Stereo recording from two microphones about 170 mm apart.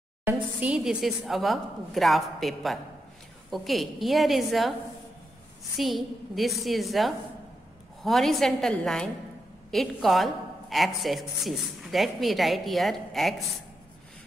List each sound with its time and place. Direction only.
0.2 s a woman's voice: 10° right (ahead or behind)
5.8 s a woman's voice: centre (ahead or behind)